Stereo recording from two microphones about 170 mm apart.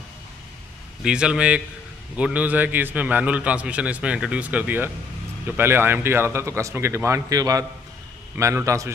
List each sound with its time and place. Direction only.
1.0 s a man's voice: 5° right (ahead or behind)